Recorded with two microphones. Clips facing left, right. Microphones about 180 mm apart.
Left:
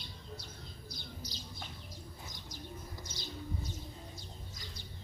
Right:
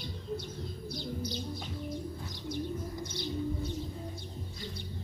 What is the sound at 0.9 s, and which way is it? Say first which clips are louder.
Bird: right 13 dB; 60° right (ahead or behind).